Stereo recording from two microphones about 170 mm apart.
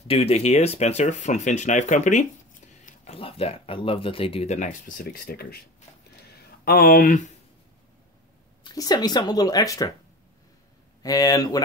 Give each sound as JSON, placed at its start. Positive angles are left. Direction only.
{"t": 0.1, "sound": "speech", "side_deg": 35}
{"t": 2.8, "sound": "speech", "side_deg": 35}
{"t": 6.6, "sound": "speech", "side_deg": 60}
{"t": 8.6, "sound": "speech", "side_deg": 25}
{"t": 11.0, "sound": "speech", "side_deg": 20}